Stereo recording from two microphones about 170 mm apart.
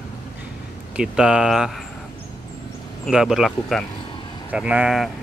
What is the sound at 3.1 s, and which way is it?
Speech, centre (ahead or behind).